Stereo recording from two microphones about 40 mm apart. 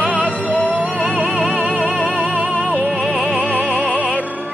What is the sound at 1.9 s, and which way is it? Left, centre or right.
Music, left.